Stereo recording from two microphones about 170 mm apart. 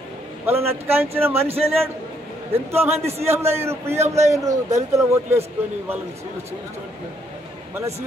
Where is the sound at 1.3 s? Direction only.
35° right (ahead or behind).